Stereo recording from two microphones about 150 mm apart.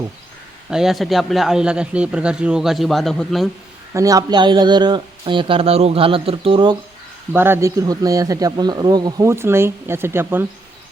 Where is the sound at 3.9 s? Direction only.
25° right (ahead or behind).